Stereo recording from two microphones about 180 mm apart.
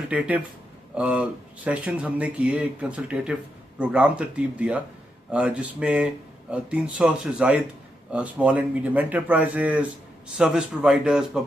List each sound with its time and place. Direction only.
0.1 s speech: 5° right (ahead or behind)